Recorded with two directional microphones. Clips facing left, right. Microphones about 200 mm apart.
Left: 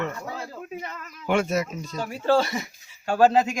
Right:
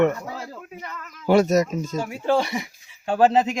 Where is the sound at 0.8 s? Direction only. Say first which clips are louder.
Even; 25° left (ahead or behind).